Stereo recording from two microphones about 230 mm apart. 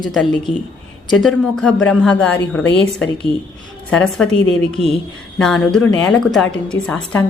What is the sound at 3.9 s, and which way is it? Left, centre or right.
Speech, centre.